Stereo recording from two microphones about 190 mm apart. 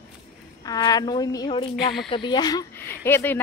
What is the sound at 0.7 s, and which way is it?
Speech, 20° left (ahead or behind).